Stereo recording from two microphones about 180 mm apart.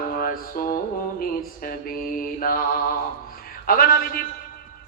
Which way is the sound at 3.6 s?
55° left (ahead or behind).